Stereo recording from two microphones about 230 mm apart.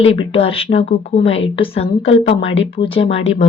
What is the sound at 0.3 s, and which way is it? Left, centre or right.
A woman's voice, left.